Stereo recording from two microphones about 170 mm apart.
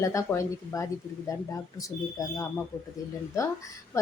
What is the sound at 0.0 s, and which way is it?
Speech, 20° left (ahead or behind).